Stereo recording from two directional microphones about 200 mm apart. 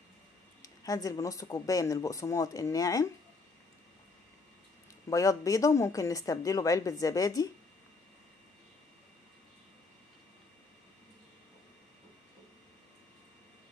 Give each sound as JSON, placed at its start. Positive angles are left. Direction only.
{"t": 0.6, "sound": "speech", "side_deg": 20}
{"t": 5.1, "sound": "speech", "side_deg": 15}